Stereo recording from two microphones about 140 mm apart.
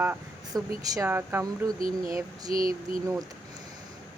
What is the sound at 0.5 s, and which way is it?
Speech, 25° right (ahead or behind).